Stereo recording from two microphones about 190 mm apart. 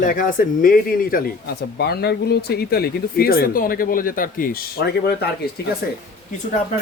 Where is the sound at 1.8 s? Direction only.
60° left (ahead or behind).